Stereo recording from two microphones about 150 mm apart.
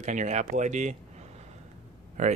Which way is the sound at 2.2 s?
55° right (ahead or behind).